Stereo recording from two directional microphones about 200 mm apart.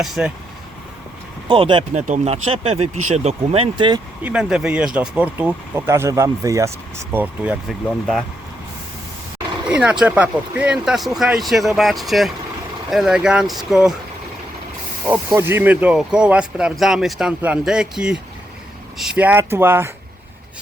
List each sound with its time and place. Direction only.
0.0 s speech: 5° right (ahead or behind)
1.5 s speech: 25° right (ahead or behind)
4.2 s speech: 5° right (ahead or behind)
9.6 s speech: 5° right (ahead or behind)
15.3 s speech: 10° right (ahead or behind)